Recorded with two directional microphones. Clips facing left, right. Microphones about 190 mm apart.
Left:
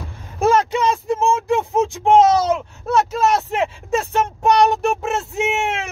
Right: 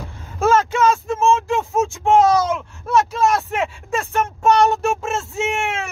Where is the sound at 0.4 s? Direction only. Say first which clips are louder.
Even; 15° left (ahead or behind).